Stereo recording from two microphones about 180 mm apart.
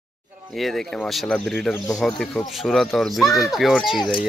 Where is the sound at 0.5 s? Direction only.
Centre (ahead or behind).